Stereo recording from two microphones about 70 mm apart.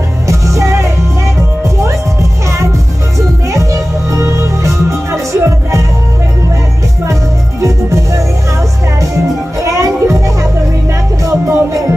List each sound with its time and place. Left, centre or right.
0.3 s music: right
3.5 s music: right
7.6 s music: right
11.2 s music: right